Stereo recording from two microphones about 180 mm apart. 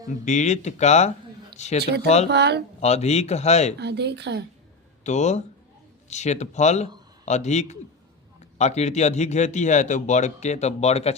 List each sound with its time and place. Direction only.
0.3 s a man's voice: 40° left (ahead or behind)
1.8 s speech: 65° right (ahead or behind)
2.8 s a man's voice: 35° left (ahead or behind)
3.8 s speech: 70° right (ahead or behind)
5.0 s a man's voice: 40° left (ahead or behind)